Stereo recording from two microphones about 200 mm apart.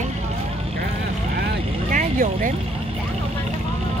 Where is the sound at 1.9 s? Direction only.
40° right (ahead or behind).